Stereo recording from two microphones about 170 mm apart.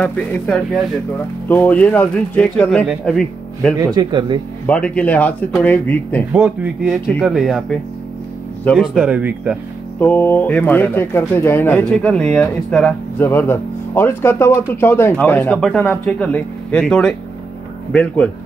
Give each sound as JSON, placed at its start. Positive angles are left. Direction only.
{"t": 0.0, "sound": "speech", "side_deg": 10}
{"t": 3.8, "sound": "speech", "side_deg": -25}
{"t": 4.6, "sound": "speech", "side_deg": 10}
{"t": 6.3, "sound": "speech", "side_deg": -5}
{"t": 8.6, "sound": "speech", "side_deg": -5}
{"t": 9.9, "sound": "speech", "side_deg": 10}